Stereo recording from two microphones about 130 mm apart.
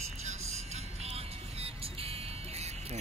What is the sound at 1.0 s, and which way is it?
Music, 50° right (ahead or behind).